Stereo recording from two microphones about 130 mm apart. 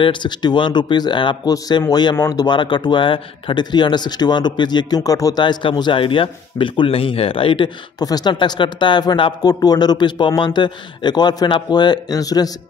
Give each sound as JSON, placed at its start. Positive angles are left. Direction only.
{"t": 0.0, "sound": "speech", "side_deg": 35}
{"t": 8.0, "sound": "speech", "side_deg": 30}